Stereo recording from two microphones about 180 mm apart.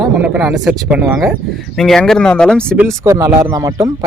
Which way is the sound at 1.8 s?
Centre (ahead or behind).